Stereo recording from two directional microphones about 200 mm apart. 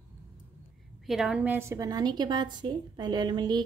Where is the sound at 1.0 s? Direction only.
Centre (ahead or behind).